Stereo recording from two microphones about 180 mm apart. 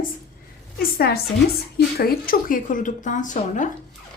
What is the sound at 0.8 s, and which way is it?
A woman's voice, 60° left (ahead or behind).